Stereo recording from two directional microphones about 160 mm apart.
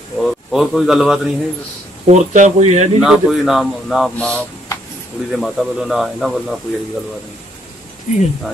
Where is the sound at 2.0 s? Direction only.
45° right (ahead or behind).